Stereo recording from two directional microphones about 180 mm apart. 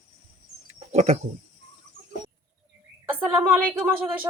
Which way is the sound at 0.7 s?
40° right (ahead or behind).